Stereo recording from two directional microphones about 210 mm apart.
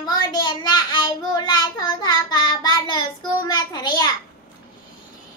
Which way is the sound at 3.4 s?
20° left (ahead or behind).